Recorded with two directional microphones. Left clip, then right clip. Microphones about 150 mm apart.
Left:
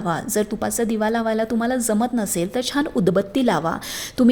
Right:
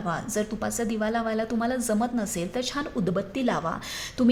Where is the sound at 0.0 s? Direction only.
40° left (ahead or behind).